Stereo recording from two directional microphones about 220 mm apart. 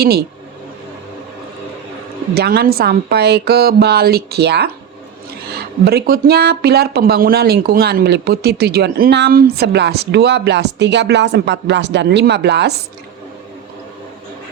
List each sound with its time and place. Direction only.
0.0 s speech: 45° right (ahead or behind)
2.3 s speech: 45° right (ahead or behind)
5.8 s speech: 45° right (ahead or behind)